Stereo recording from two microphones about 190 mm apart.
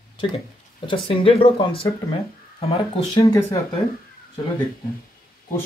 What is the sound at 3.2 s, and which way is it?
Speech, 15° left (ahead or behind).